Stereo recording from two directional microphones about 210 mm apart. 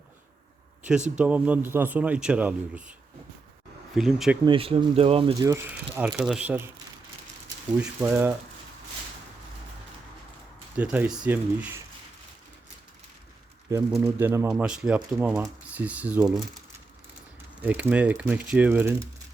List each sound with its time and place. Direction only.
1.1 s speech: 5° right (ahead or behind)
3.9 s speech: centre (ahead or behind)
4.4 s speech: 25° right (ahead or behind); by 6.7 s 5° right (ahead or behind)
7.7 s speech: 5° right (ahead or behind)
10.8 s speech: 10° right (ahead or behind)
13.7 s speech: 10° right (ahead or behind)
17.6 s speech: 10° right (ahead or behind)